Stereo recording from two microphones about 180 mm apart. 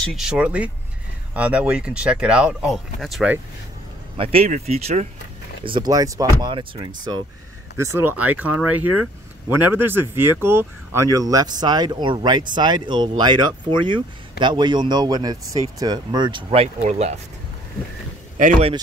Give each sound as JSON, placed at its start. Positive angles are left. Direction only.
{"t": 0.0, "sound": "speech", "side_deg": 0}
{"t": 4.2, "sound": "speech", "side_deg": -30}
{"t": 7.8, "sound": "speech", "side_deg": -15}
{"t": 18.4, "sound": "speech", "side_deg": -35}